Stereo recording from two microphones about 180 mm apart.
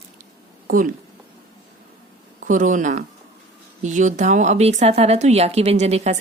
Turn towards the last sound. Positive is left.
turn(degrees=-35)  # may be behind; listen again after turning